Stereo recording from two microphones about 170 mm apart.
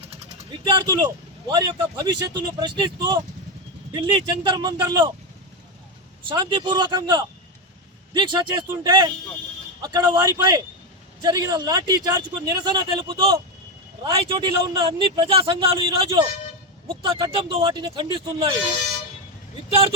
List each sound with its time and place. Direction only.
0.0 s a sound: 35° right (ahead or behind)
1.5 s speech: 25° right (ahead or behind)
6.2 s speech: 25° right (ahead or behind)